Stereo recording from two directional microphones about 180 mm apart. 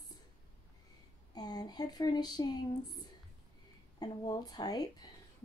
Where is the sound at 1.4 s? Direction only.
20° left (ahead or behind).